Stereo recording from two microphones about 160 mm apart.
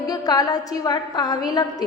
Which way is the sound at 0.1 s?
25° left (ahead or behind).